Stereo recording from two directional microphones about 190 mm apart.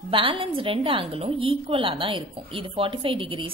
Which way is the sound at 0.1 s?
30° right (ahead or behind).